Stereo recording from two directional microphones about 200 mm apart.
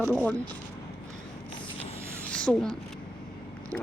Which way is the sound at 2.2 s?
5° left (ahead or behind).